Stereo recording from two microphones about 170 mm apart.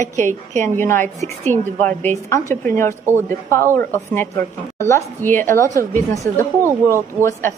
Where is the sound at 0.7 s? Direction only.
15° left (ahead or behind).